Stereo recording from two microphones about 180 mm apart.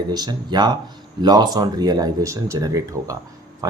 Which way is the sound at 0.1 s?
20° right (ahead or behind).